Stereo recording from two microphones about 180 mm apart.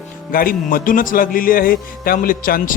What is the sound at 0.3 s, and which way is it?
A man's voice, 50° left (ahead or behind).